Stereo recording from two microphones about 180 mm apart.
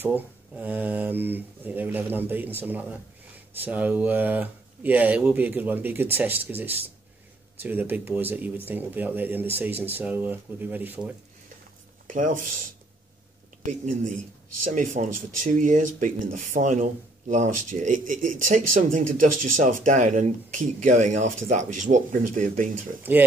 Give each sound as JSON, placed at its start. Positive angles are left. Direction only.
{"t": 0.0, "sound": "speech", "side_deg": -10}
{"t": 12.1, "sound": "speech", "side_deg": -45}
{"t": 13.7, "sound": "speech", "side_deg": -45}